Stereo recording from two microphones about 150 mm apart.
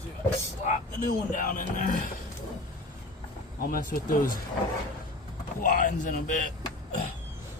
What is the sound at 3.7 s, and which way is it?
Speech, 70° left (ahead or behind).